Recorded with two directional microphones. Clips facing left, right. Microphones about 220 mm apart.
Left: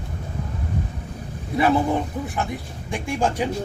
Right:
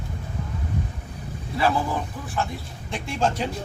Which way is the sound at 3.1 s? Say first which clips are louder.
Left 2 dB; 15° left (ahead or behind).